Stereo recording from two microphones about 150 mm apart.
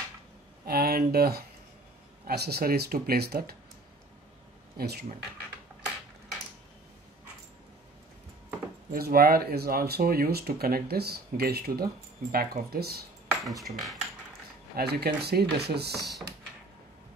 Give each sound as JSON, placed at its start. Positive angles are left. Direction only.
{"t": 0.7, "sound": "speech", "side_deg": -90}
{"t": 4.7, "sound": "speech", "side_deg": -90}
{"t": 8.9, "sound": "speech", "side_deg": -85}
{"t": 13.3, "sound": "speech", "side_deg": -25}
{"t": 13.7, "sound": "speech", "side_deg": 0}
{"t": 14.8, "sound": "speech", "side_deg": -90}